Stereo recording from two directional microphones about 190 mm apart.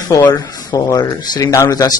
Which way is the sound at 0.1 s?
20° left (ahead or behind).